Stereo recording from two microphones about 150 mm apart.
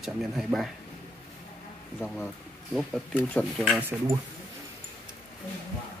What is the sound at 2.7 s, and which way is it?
Speech, 5° left (ahead or behind).